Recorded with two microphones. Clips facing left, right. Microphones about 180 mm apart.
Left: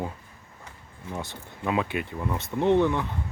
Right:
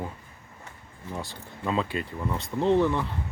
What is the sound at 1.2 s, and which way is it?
Speech, 15° left (ahead or behind).